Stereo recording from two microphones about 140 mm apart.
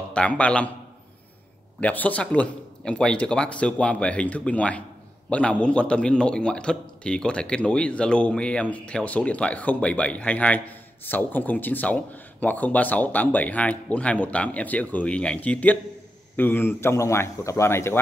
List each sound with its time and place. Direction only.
0.1 s a man's voice: 10° left (ahead or behind)
1.8 s a man's voice: 10° left (ahead or behind)